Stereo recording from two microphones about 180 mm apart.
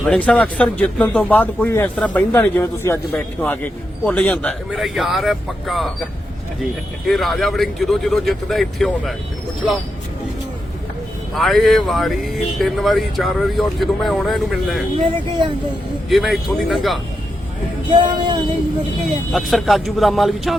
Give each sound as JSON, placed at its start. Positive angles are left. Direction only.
{"t": 0.0, "sound": "speech", "side_deg": 5}
{"t": 7.1, "sound": "speech", "side_deg": 0}
{"t": 11.3, "sound": "speech", "side_deg": 0}
{"t": 16.0, "sound": "speech", "side_deg": 0}
{"t": 17.9, "sound": "music", "side_deg": -30}
{"t": 19.3, "sound": "speech", "side_deg": 0}